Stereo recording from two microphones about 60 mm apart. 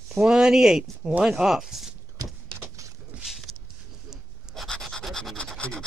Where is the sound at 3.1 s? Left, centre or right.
Right.